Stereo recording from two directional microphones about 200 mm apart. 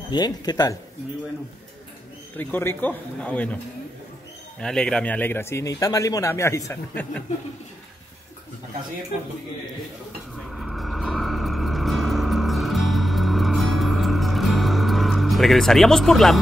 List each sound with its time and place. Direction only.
0.1 s speech: 20° left (ahead or behind)
2.3 s speech: 10° left (ahead or behind)
4.6 s speech: 5° left (ahead or behind)
10.3 s vehicle: centre (ahead or behind)